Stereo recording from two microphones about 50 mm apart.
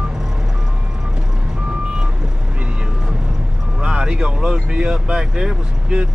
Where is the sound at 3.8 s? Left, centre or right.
Centre.